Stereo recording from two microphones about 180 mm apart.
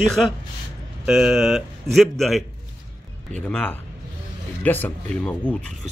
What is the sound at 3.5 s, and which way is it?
A man's voice, 5° left (ahead or behind).